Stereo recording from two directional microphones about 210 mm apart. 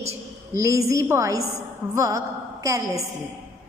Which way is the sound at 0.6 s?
15° right (ahead or behind).